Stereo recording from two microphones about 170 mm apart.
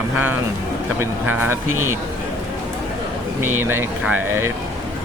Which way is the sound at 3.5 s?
15° right (ahead or behind).